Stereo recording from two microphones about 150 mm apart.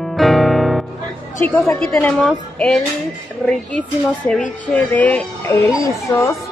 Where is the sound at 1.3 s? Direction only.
15° left (ahead or behind).